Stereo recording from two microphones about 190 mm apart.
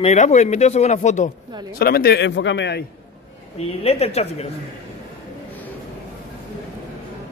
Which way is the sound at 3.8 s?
30° left (ahead or behind).